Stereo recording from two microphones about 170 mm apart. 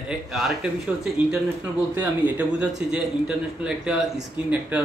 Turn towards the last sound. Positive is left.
turn(degrees=-10)  # may be behind; listen again after turning